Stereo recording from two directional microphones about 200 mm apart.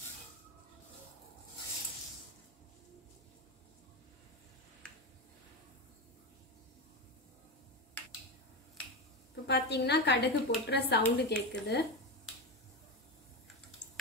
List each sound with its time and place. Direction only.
9.5 s a woman's voice: 55° left (ahead or behind)